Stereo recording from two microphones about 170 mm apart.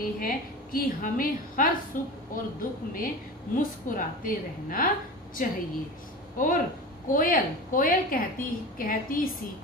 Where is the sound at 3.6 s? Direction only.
55° left (ahead or behind).